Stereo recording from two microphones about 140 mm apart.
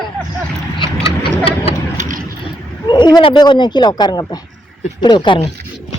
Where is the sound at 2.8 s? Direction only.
30° left (ahead or behind).